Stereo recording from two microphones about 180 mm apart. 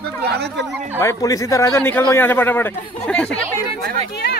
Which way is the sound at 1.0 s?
15° left (ahead or behind).